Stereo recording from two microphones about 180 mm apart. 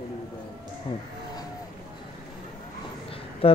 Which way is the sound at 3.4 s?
30° left (ahead or behind).